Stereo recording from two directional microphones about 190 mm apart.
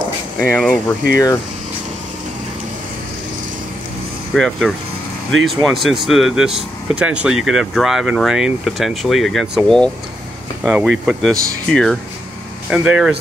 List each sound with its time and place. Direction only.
0.4 s speech: 5° left (ahead or behind)
1.1 s speech: 15° left (ahead or behind)
4.3 s speech: centre (ahead or behind)